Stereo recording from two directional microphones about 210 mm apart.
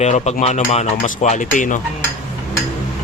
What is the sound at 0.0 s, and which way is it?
Speech, 35° left (ahead or behind).